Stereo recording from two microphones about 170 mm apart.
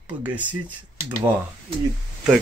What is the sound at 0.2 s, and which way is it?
Speech, 10° right (ahead or behind).